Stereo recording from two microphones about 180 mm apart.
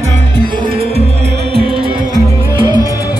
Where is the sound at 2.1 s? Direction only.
25° right (ahead or behind).